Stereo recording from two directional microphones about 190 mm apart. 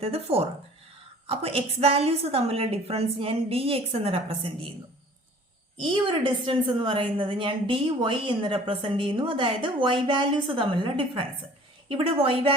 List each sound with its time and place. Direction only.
0.0 s a woman's voice: 30° right (ahead or behind)
5.7 s a woman's voice: 25° right (ahead or behind)